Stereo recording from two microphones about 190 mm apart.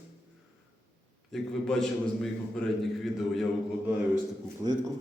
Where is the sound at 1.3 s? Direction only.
5° left (ahead or behind).